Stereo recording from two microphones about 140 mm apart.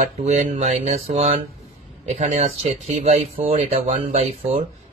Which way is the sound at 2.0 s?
60° right (ahead or behind).